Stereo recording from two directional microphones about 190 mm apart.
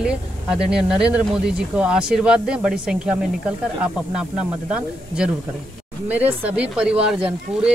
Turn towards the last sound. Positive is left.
turn(degrees=-5)  # may be behind; listen again after turning